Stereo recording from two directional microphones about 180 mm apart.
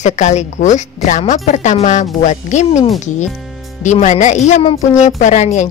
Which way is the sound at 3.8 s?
40° left (ahead or behind).